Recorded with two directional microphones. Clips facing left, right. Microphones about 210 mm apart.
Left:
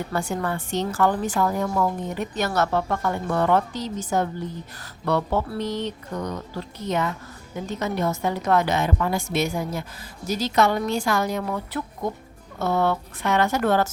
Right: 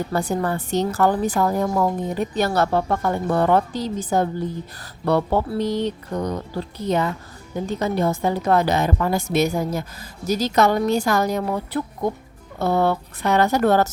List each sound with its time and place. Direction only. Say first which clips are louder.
0.1 s a woman's voice: right 3 dB; 35° right (ahead or behind)